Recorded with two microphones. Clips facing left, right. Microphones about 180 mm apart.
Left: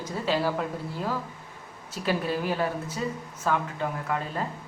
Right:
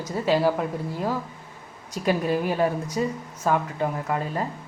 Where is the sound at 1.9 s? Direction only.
45° right (ahead or behind).